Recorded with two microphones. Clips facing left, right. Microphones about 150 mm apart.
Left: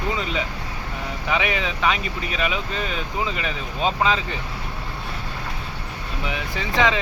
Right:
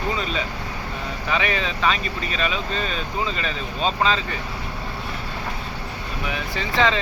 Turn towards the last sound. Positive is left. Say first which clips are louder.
# even
turn(degrees=15)  # may be behind; listen again after turning